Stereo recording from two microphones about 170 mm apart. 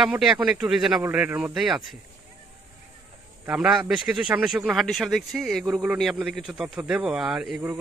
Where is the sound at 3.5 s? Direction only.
5° right (ahead or behind).